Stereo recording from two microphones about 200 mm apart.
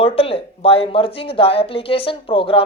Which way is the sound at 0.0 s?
30° left (ahead or behind).